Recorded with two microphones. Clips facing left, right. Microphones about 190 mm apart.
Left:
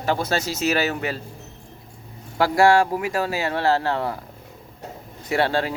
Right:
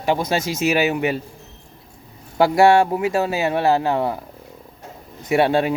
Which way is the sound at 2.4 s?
20° right (ahead or behind).